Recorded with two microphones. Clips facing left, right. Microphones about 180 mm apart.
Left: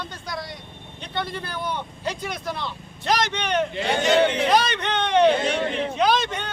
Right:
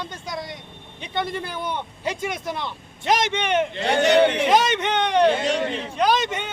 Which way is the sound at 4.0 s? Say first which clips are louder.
Right 3 dB; 65° right (ahead or behind).